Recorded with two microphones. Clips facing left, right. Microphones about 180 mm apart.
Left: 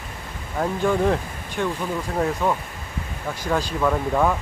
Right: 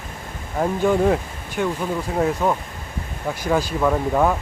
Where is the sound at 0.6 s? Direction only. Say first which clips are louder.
Right 3 dB; 10° right (ahead or behind).